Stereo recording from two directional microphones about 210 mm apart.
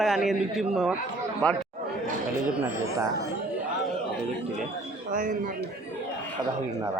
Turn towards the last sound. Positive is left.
turn(degrees=-40)  # may be behind; listen again after turning